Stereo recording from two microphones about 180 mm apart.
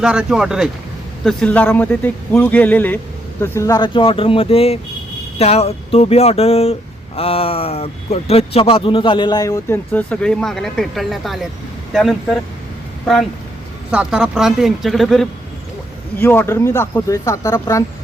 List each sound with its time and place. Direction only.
0.0 s speech: 5° right (ahead or behind)
13.9 s speech: 5° right (ahead or behind)
16.1 s speech: 15° left (ahead or behind)